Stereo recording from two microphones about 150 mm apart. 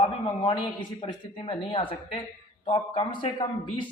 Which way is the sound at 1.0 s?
35° left (ahead or behind).